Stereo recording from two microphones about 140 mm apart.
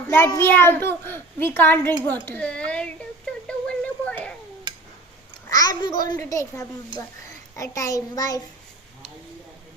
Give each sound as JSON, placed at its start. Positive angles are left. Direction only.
{"t": 0.3, "sound": "a child's voice", "side_deg": 15}
{"t": 3.4, "sound": "a sound", "side_deg": 10}
{"t": 5.5, "sound": "child singing", "side_deg": 30}